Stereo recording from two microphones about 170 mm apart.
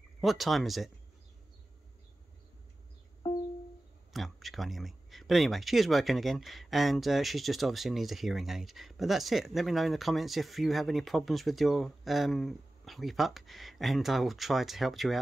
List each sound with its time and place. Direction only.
0.2 s speech: centre (ahead or behind)
3.2 s music: 20° left (ahead or behind)
4.1 s speech: centre (ahead or behind)